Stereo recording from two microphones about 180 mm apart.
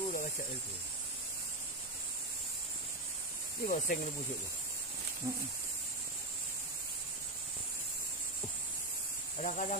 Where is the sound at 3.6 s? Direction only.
50° left (ahead or behind).